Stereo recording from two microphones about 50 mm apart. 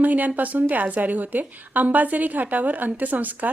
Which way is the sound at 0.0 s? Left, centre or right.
Right.